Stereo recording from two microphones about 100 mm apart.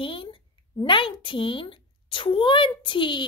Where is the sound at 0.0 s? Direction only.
60° left (ahead or behind).